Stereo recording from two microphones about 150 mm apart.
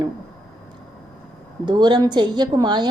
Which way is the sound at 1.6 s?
30° right (ahead or behind).